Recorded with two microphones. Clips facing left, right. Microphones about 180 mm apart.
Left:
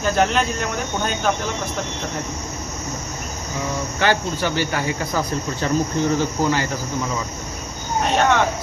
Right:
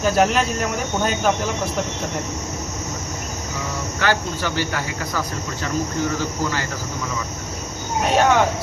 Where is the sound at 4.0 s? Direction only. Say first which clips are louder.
Left 2 dB; 20° left (ahead or behind).